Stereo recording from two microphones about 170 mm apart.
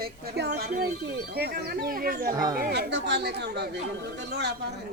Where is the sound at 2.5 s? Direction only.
60° right (ahead or behind); by 4.7 s 75° right (ahead or behind).